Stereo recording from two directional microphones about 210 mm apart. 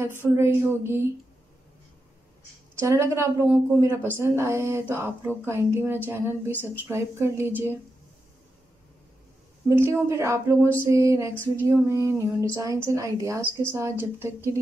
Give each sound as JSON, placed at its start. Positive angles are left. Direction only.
{"t": 0.4, "sound": "female singing", "side_deg": -10}
{"t": 2.9, "sound": "female singing", "side_deg": -15}
{"t": 9.7, "sound": "female singing", "side_deg": -10}